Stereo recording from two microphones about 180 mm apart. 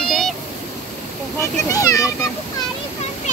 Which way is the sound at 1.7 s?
20° left (ahead or behind).